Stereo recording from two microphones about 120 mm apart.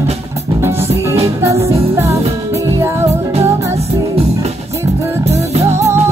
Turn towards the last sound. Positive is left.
turn(degrees=-20)  # may be behind; listen again after turning